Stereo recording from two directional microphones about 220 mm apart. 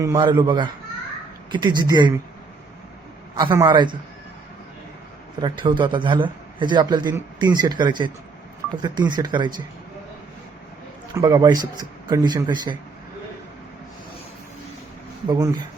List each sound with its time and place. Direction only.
0.0 s a man's voice: 20° right (ahead or behind)
3.3 s a man's voice: 15° right (ahead or behind)
5.4 s a man's voice: 20° right (ahead or behind)
11.1 s a man's voice: 15° right (ahead or behind)
15.3 s a man's voice: 20° right (ahead or behind)